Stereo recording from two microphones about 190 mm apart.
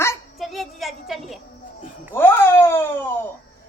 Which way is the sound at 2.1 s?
10° left (ahead or behind).